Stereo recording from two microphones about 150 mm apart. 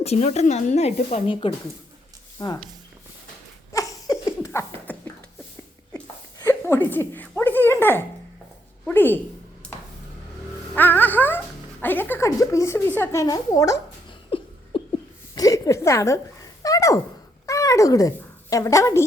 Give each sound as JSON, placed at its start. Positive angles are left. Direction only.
{"t": 0.0, "sound": "a woman's voice", "side_deg": 45}
{"t": 3.7, "sound": "a sound", "side_deg": 20}
{"t": 6.4, "sound": "dog", "side_deg": 15}
{"t": 8.9, "sound": "music", "side_deg": 15}
{"t": 10.8, "sound": "music", "side_deg": 10}
{"t": 11.8, "sound": "a woman's voice", "side_deg": 15}
{"t": 14.3, "sound": "a sound", "side_deg": 35}
{"t": 15.4, "sound": "a sound", "side_deg": 25}
{"t": 18.5, "sound": "a woman's voice", "side_deg": 20}